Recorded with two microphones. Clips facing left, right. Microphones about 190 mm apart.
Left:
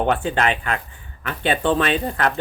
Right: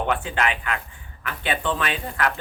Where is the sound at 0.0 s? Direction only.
35° left (ahead or behind).